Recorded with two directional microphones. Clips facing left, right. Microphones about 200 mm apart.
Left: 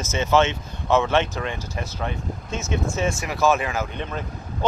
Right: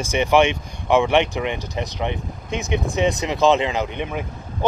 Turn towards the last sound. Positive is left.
turn(degrees=-15)  # may be behind; listen again after turning